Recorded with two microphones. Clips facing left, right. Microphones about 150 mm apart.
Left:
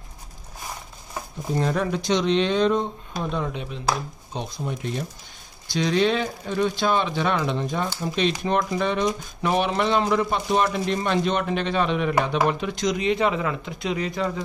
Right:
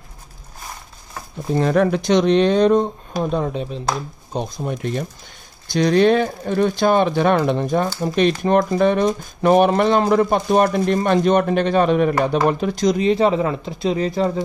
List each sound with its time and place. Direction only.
1.6 s speech: 65° right (ahead or behind); by 3.8 s 40° right (ahead or behind)
4.3 s speech: 50° right (ahead or behind); by 14.4 s 35° right (ahead or behind)